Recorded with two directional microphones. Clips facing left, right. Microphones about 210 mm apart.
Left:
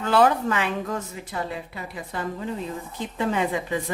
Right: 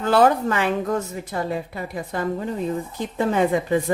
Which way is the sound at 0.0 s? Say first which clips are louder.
Right 3 dB; 40° right (ahead or behind).